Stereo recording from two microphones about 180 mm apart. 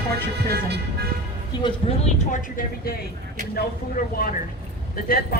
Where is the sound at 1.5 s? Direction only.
25° left (ahead or behind).